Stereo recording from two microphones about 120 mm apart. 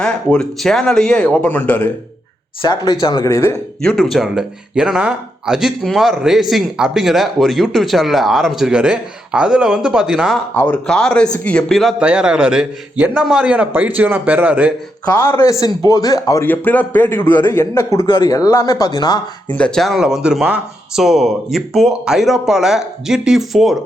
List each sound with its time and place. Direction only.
0.0 s speech: 5° left (ahead or behind)
2.6 s speech: 40° left (ahead or behind)
3.8 s speech: 5° left (ahead or behind)
10.5 s speech: 15° left (ahead or behind)
10.8 s speech: 5° left (ahead or behind)
11.9 s a man's voice: 10° right (ahead or behind)
15.1 s speech: 20° left (ahead or behind)
15.6 s speech: 30° left (ahead or behind)
16.5 s speech: 15° left (ahead or behind)
18.0 s speech: 40° left (ahead or behind)
18.3 s speech: 30° left (ahead or behind)
19.5 s speech: 10° left (ahead or behind)